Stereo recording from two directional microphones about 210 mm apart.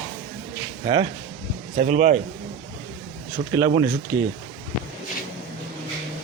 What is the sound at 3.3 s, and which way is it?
Speech, 15° right (ahead or behind).